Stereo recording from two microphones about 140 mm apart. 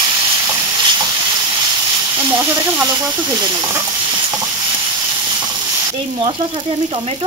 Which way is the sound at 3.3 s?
25° right (ahead or behind).